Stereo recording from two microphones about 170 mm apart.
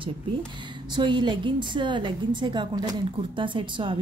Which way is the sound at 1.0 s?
25° right (ahead or behind).